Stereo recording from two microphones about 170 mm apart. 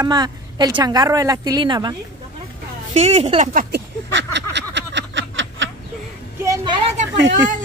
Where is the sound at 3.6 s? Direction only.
80° right.